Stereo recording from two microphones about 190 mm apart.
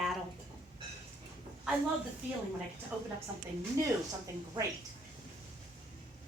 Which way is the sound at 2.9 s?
5° right (ahead or behind).